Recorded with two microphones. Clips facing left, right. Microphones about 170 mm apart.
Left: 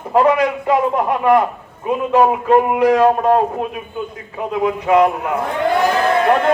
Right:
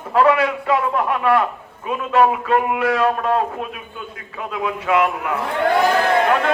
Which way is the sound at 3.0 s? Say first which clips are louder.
Left 5 dB; 35° left (ahead or behind).